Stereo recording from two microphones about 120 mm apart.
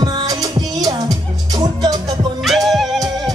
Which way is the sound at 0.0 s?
35° right (ahead or behind).